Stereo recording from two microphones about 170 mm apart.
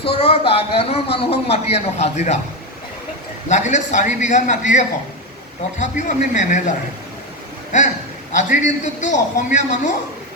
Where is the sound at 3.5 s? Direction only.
45° left (ahead or behind).